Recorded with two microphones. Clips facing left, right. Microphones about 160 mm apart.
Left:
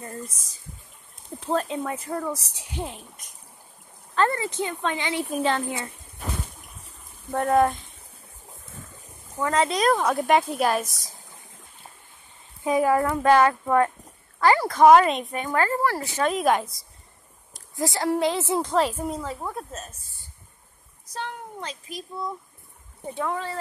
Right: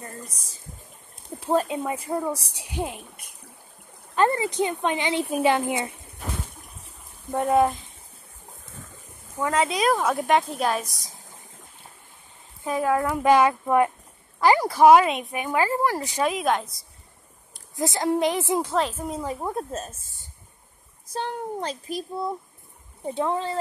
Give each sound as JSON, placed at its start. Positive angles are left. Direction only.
{"t": 1.4, "sound": "speech", "side_deg": -10}
{"t": 4.1, "sound": "speech", "side_deg": -15}
{"t": 7.2, "sound": "speech", "side_deg": -10}
{"t": 9.4, "sound": "speech", "side_deg": -5}
{"t": 12.6, "sound": "speech", "side_deg": 10}
{"t": 13.0, "sound": "speech", "side_deg": -10}
{"t": 16.3, "sound": "speech", "side_deg": 0}
{"t": 17.7, "sound": "speech", "side_deg": -20}
{"t": 18.7, "sound": "speech", "side_deg": 5}
{"t": 19.4, "sound": "speech", "side_deg": -30}
{"t": 21.1, "sound": "speech", "side_deg": -35}
{"t": 23.1, "sound": "speech", "side_deg": -25}